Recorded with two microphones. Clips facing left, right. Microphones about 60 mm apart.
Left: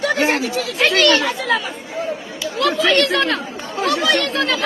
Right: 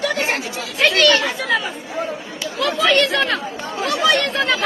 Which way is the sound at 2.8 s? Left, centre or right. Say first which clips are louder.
Right 1 dB; centre.